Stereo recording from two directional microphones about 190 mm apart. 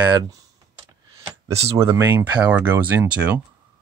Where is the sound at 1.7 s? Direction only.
15° right (ahead or behind).